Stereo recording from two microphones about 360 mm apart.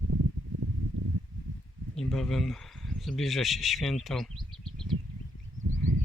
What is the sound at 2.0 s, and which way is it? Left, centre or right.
Speech, centre.